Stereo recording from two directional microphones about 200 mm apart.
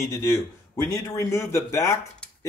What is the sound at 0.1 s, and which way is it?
A man's voice, 15° left (ahead or behind).